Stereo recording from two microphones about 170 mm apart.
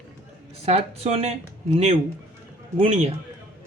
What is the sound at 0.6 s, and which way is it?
Speech, 35° right (ahead or behind).